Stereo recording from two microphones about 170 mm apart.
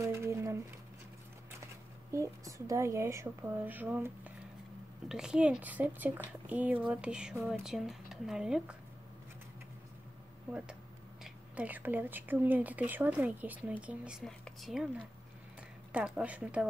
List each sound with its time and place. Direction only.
0.0 s a sound: 15° right (ahead or behind)
2.1 s speech: 20° right (ahead or behind)
11.2 s speech: 10° right (ahead or behind)